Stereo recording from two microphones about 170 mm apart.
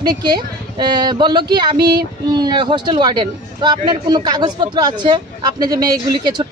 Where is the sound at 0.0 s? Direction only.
25° right (ahead or behind).